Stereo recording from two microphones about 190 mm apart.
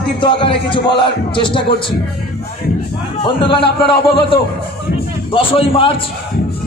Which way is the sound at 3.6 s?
30° left (ahead or behind).